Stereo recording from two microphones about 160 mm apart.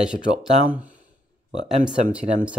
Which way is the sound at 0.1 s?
5° right (ahead or behind).